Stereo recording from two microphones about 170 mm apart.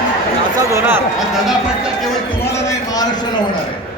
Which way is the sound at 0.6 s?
15° right (ahead or behind).